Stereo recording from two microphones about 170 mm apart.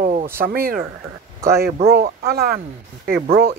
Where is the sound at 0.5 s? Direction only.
60° right (ahead or behind).